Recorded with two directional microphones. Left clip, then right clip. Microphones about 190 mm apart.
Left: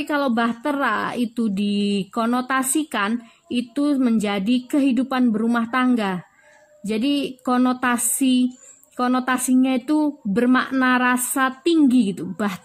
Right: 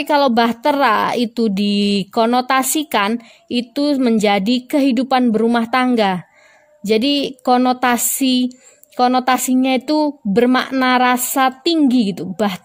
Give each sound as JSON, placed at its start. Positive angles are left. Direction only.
{"t": 0.0, "sound": "a woman's voice", "side_deg": -45}